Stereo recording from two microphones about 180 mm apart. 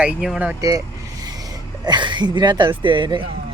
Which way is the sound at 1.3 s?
20° right (ahead or behind).